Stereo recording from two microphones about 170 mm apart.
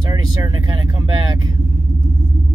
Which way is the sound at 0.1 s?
25° right (ahead or behind).